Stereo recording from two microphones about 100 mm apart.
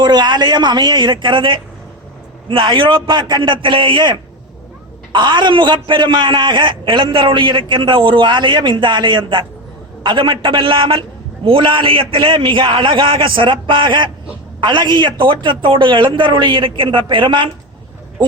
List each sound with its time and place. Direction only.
0.0 s a man's voice: 50° right (ahead or behind)